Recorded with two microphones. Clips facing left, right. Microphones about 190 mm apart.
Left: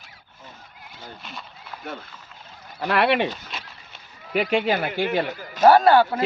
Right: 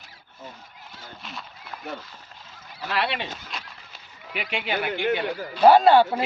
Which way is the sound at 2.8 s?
60° left (ahead or behind).